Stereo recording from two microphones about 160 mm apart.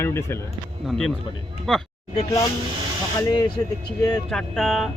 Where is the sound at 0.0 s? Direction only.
15° left (ahead or behind).